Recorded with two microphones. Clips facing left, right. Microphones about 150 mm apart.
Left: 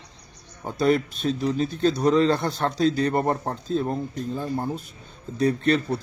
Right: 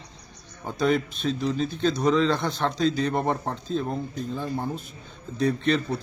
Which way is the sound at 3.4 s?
40° left (ahead or behind).